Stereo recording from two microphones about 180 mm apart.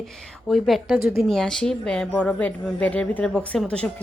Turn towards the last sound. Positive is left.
turn(degrees=5)  # may be behind; listen again after turning